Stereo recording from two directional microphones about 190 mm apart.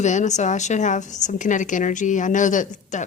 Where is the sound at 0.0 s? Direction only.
40° left (ahead or behind).